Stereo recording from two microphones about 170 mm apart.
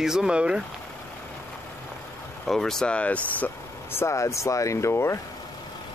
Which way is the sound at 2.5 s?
5° left (ahead or behind).